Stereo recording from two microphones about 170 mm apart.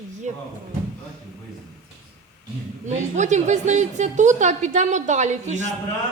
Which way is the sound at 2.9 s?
45° right (ahead or behind).